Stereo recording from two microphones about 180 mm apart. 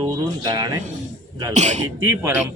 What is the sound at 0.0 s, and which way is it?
Speech, 20° right (ahead or behind).